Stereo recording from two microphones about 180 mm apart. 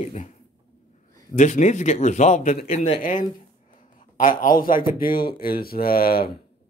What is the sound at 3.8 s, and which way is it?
Speech, 45° left (ahead or behind).